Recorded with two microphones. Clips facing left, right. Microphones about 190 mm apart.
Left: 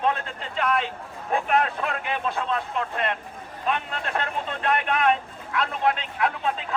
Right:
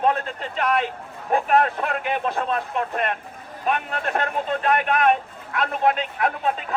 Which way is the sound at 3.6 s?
45° right (ahead or behind).